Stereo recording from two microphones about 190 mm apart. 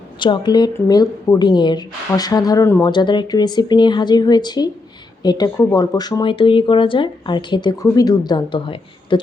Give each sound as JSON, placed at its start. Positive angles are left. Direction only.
{"t": 0.2, "sound": "speech", "side_deg": 20}